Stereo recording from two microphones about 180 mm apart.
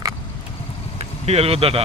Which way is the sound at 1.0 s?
35° right (ahead or behind).